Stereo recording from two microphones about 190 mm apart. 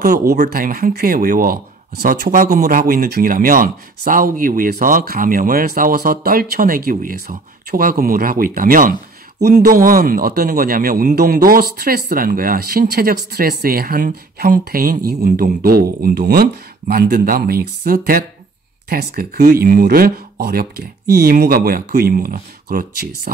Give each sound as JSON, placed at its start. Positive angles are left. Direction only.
{"t": 0.0, "sound": "speech", "side_deg": -45}